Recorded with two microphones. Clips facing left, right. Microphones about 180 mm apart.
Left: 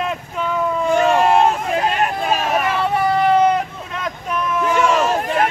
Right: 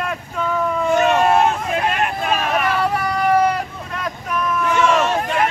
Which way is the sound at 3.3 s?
25° left (ahead or behind).